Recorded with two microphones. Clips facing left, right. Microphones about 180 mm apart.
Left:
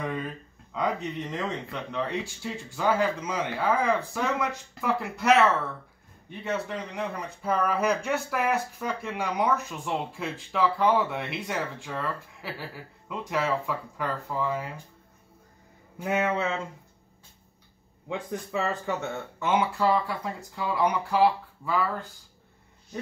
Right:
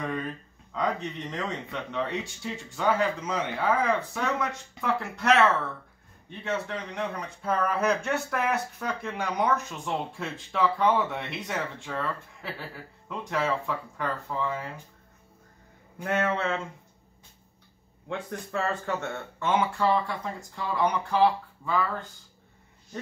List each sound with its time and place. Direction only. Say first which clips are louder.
0.0 s a sound: even; 5° left (ahead or behind)
0.7 s a man's voice: left 1 dB; 5° left (ahead or behind)
16.0 s speech: left 1 dB; 10° left (ahead or behind)
18.0 s a man's voice: left 2 dB; 5° left (ahead or behind)